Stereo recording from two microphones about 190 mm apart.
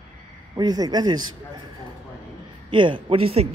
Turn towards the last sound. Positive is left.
turn(degrees=-30)  # may be behind; listen again after turning